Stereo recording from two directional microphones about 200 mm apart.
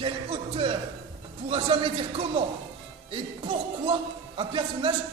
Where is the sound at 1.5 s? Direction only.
30° right (ahead or behind).